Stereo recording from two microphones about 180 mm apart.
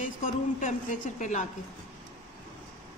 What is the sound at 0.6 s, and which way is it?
Speech, 45° left (ahead or behind).